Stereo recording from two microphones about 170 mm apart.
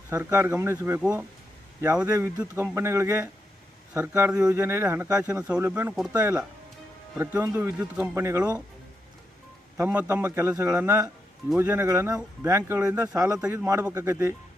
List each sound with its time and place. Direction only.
0.1 s speech: 15° right (ahead or behind)
2.0 s speech: 20° right (ahead or behind)
9.8 s speech: 15° right (ahead or behind)
13.4 s speech: 5° right (ahead or behind)